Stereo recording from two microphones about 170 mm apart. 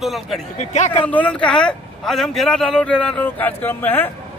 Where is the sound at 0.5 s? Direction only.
40° left (ahead or behind).